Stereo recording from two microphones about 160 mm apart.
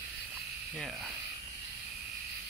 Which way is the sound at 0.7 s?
5° right (ahead or behind).